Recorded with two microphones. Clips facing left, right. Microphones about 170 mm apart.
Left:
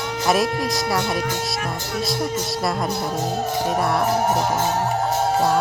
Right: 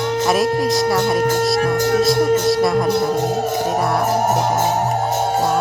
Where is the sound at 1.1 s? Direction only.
50° right (ahead or behind).